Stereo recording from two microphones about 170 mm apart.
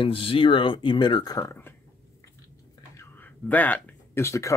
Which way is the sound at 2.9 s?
10° left (ahead or behind).